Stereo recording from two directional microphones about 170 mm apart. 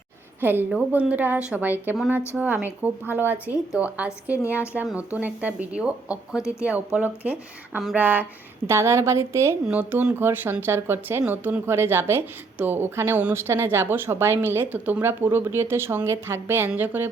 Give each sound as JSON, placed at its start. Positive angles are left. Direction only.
{"t": 0.7, "sound": "speech", "side_deg": -5}